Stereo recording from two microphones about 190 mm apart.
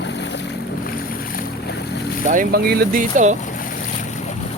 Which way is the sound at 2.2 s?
50° right (ahead or behind).